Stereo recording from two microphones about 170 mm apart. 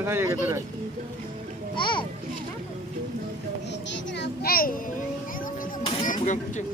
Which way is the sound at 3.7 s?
90° left.